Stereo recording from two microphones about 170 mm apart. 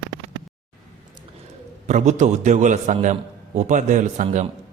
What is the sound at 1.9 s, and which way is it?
A man's voice, 45° right (ahead or behind).